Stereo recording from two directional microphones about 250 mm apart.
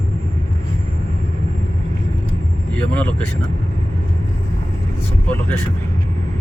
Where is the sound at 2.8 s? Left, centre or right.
Centre.